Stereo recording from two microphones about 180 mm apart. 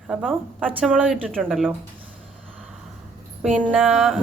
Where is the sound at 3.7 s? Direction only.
Centre (ahead or behind).